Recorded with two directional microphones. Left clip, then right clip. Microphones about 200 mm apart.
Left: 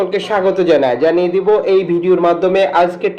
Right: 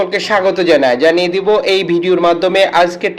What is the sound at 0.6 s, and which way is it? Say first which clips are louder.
A man's voice: right 2 dB; 30° right (ahead or behind).